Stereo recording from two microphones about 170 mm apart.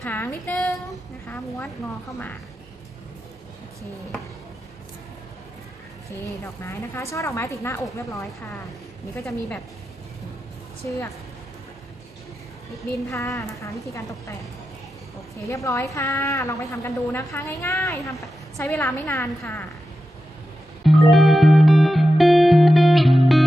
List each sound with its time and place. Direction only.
0.0 s a woman's voice: 10° left (ahead or behind)
6.2 s a woman's voice: 15° left (ahead or behind)
10.8 s a woman's voice: 15° left (ahead or behind)
13.1 s a woman's voice: 20° left (ahead or behind)
15.4 s a woman's voice: 20° left (ahead or behind)
20.8 s music: centre (ahead or behind)